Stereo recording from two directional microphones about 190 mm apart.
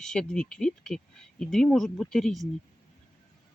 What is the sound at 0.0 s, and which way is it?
Speech, 5° left (ahead or behind).